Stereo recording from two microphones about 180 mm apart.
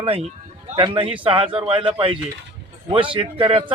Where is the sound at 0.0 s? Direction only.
35° right (ahead or behind).